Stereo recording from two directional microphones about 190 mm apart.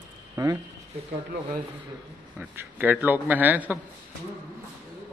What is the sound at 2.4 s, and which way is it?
Speech, 10° right (ahead or behind).